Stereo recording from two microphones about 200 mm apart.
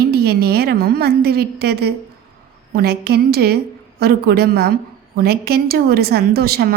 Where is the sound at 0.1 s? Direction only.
50° right (ahead or behind).